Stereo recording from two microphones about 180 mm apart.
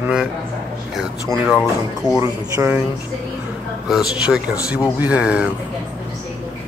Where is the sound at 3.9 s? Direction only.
5° right (ahead or behind).